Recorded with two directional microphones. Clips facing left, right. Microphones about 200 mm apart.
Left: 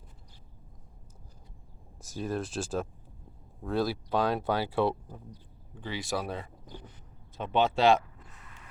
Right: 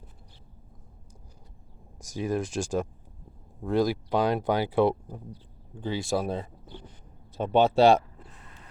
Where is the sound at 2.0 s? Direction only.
15° right (ahead or behind).